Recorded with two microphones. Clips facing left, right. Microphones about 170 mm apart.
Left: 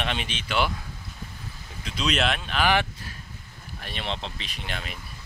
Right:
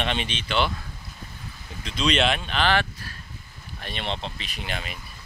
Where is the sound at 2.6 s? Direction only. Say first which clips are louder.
Even; 15° left (ahead or behind).